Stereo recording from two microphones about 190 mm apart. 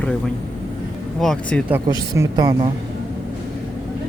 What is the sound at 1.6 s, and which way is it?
A man's voice, 10° right (ahead or behind).